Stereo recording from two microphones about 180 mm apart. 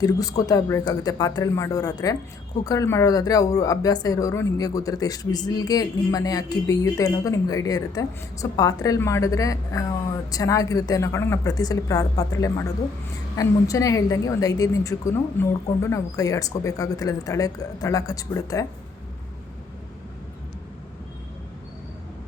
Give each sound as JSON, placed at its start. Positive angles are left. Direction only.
{"t": 0.0, "sound": "a woman's voice", "side_deg": 20}